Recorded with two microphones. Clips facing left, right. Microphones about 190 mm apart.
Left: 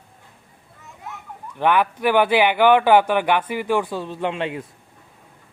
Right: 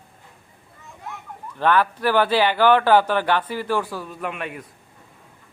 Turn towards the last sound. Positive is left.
turn(degrees=25)  # may be behind; listen again after turning